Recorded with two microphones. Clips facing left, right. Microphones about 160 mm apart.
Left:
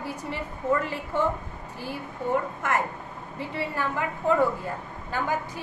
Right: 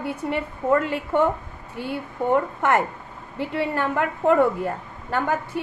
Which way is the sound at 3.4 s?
65° right (ahead or behind).